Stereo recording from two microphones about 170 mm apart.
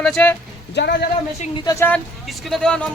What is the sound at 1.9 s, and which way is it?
Speech, centre (ahead or behind).